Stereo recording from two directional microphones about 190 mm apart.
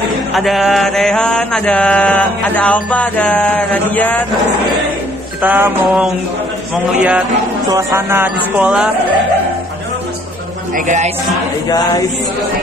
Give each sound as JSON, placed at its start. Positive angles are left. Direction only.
{"t": 0.3, "sound": "mantra", "side_deg": 0}
{"t": 5.4, "sound": "a man's voice", "side_deg": -10}